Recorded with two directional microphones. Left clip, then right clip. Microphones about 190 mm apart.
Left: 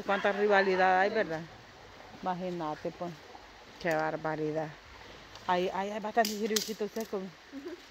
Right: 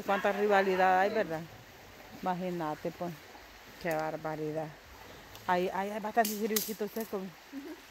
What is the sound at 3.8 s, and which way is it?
Speech, 15° left (ahead or behind).